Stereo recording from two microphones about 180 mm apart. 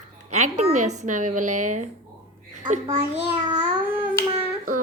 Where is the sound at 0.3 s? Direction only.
45° right (ahead or behind).